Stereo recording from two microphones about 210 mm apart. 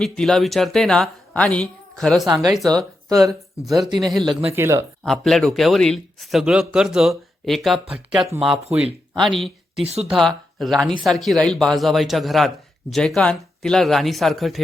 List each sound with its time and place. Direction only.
0.0 s speech: centre (ahead or behind)
2.2 s speech: 20° right (ahead or behind)
4.0 s speech: centre (ahead or behind)
4.3 s speech: 25° right (ahead or behind)
4.5 s speech: 10° right (ahead or behind)
5.0 s speech: centre (ahead or behind)
9.8 s speech: 30° right (ahead or behind)
10.1 s speech: centre (ahead or behind)